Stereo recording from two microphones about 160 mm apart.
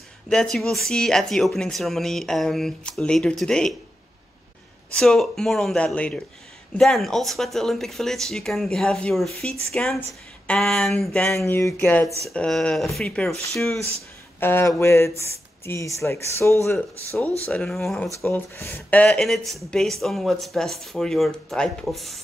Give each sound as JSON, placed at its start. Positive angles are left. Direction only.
{"t": 0.3, "sound": "speech", "side_deg": 0}
{"t": 4.9, "sound": "speech", "side_deg": 0}
{"t": 13.7, "sound": "speech", "side_deg": -40}
{"t": 14.4, "sound": "speech", "side_deg": 15}
{"t": 17.5, "sound": "speech", "side_deg": 5}